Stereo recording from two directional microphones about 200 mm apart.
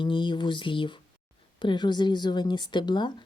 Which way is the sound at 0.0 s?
25° left (ahead or behind).